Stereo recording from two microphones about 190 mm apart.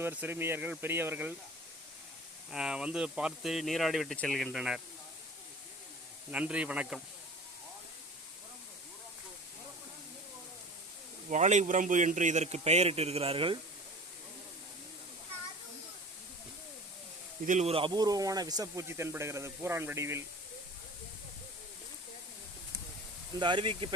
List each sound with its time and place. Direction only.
0.0 s speech: 10° right (ahead or behind)
2.5 s speech: 5° right (ahead or behind)
6.3 s speech: 5° right (ahead or behind)
11.3 s a man's voice: 40° right (ahead or behind)
17.4 s speech: 40° right (ahead or behind); by 20.2 s 15° right (ahead or behind)
23.4 s speech: 25° right (ahead or behind)